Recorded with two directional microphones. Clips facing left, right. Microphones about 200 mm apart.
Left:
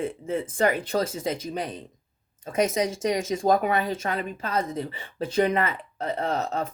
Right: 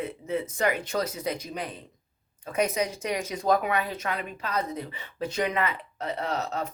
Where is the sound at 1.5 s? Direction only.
40° left (ahead or behind).